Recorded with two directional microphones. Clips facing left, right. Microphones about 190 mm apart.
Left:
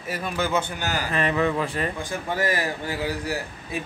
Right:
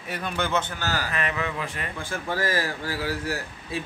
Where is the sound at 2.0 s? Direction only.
20° left (ahead or behind).